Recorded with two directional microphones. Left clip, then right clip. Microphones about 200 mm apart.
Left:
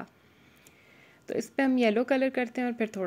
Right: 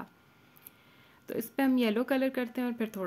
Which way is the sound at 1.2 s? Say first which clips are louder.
Left 3 dB; 5° left (ahead or behind).